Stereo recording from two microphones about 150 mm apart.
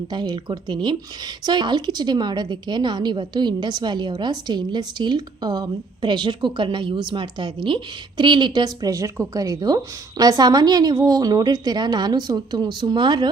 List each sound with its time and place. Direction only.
0.1 s a woman's voice: 30° right (ahead or behind)